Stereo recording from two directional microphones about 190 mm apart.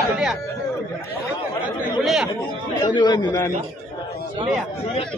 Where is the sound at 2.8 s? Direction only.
25° left (ahead or behind).